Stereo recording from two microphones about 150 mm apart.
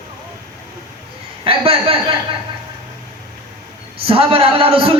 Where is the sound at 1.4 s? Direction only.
40° right (ahead or behind).